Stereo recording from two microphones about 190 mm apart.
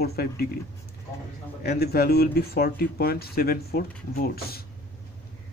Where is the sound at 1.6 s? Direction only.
55° left (ahead or behind).